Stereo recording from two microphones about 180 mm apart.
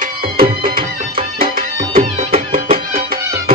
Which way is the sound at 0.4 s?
55° right (ahead or behind).